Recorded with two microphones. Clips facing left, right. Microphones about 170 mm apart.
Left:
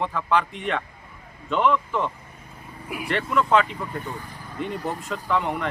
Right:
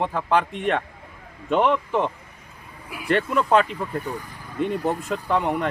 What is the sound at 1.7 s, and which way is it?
Speech, 30° right (ahead or behind).